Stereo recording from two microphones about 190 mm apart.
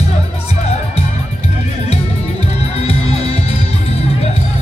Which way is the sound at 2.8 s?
35° left (ahead or behind).